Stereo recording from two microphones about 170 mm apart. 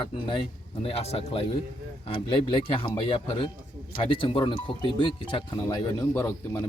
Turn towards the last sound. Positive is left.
turn(degrees=15)  # may be behind; listen again after turning